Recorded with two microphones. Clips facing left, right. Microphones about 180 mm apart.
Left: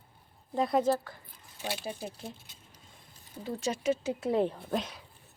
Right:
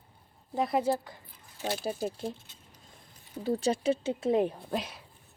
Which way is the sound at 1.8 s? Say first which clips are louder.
Right 6 dB; 40° right (ahead or behind).